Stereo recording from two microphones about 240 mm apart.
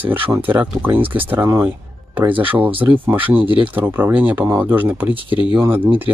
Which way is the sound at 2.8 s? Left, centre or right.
Centre.